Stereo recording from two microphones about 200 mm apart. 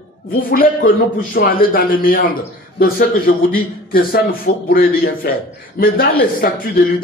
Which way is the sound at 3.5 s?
45° left (ahead or behind).